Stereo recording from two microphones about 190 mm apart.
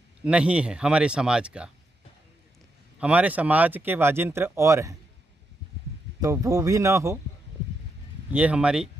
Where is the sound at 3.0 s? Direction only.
5° right (ahead or behind).